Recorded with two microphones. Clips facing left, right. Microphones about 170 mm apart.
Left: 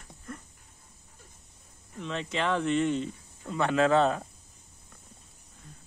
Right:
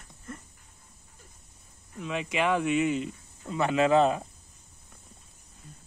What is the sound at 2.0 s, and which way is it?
Speech, 10° right (ahead or behind).